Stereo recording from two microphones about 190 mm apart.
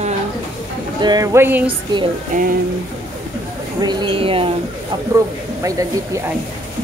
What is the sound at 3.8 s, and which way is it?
Speech, 25° right (ahead or behind).